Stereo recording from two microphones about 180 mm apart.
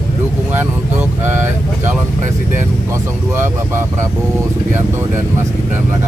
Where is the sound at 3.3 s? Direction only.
15° right (ahead or behind).